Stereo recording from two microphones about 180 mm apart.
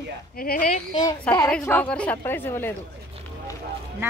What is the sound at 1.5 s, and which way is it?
A woman's voice, 10° left (ahead or behind).